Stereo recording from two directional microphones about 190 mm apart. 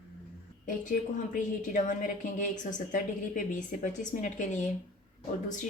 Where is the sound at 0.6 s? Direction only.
40° left (ahead or behind).